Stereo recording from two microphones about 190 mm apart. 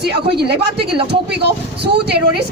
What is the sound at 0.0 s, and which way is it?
Speech, 60° right (ahead or behind).